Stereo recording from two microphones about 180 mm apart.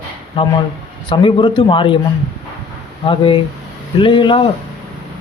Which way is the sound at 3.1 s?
30° left (ahead or behind).